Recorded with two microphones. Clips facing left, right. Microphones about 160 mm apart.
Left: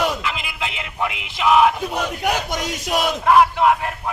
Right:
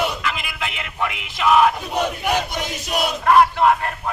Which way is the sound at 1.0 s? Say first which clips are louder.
Even; 20° left (ahead or behind).